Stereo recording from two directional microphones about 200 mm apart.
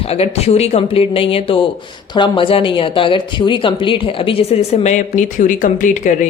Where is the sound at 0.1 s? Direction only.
30° left (ahead or behind).